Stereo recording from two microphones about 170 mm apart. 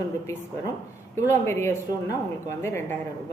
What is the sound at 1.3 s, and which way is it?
A woman's voice, 15° left (ahead or behind).